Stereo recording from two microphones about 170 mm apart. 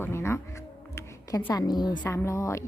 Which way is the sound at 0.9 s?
15° left (ahead or behind).